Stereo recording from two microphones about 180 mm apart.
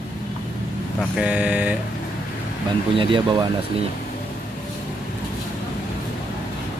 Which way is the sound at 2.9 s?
30° right (ahead or behind).